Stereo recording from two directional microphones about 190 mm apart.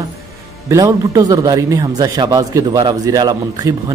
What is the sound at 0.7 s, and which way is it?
A man's voice, 15° right (ahead or behind).